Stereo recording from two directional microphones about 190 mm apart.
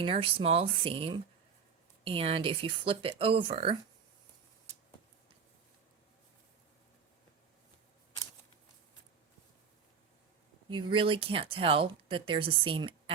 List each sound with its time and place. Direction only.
0.0 s speech: 30° right (ahead or behind)
10.7 s speech: 25° right (ahead or behind)